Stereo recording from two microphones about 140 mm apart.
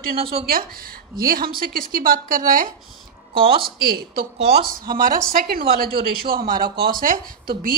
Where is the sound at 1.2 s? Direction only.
90° right.